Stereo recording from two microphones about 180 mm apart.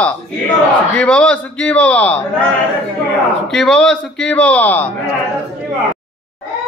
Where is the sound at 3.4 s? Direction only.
5° left (ahead or behind).